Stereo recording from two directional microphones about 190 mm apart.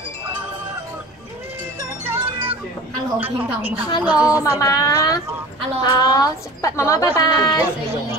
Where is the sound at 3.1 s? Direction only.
10° right (ahead or behind).